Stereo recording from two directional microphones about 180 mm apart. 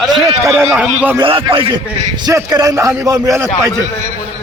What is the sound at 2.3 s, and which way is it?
Speech, 20° right (ahead or behind).